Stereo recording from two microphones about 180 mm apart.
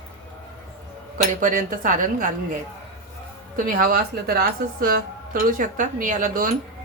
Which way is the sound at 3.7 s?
55° right (ahead or behind).